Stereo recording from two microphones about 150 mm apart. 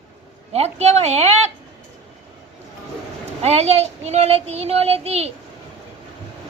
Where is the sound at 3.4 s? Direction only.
45° right (ahead or behind).